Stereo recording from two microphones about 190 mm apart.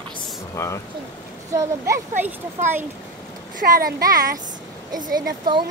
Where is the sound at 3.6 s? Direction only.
45° right (ahead or behind).